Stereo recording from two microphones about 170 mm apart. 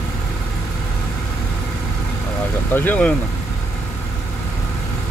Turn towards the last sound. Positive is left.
turn(degrees=10)  # may be behind; listen again after turning